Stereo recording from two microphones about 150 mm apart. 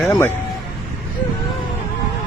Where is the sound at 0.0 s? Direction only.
15° left (ahead or behind).